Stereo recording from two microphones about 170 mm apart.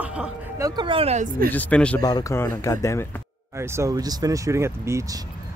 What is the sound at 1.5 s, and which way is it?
Speech, 10° left (ahead or behind).